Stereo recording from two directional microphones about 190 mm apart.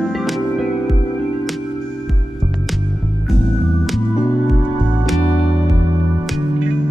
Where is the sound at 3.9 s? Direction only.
Centre (ahead or behind).